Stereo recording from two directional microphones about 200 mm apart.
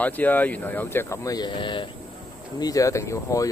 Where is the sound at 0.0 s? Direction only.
10° left (ahead or behind).